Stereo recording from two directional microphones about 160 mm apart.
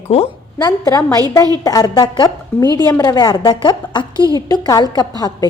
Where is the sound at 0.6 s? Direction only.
20° left (ahead or behind).